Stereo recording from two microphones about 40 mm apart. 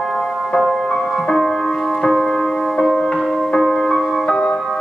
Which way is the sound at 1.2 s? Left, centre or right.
Centre.